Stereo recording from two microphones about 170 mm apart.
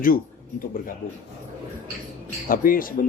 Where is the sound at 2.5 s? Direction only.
55° left (ahead or behind).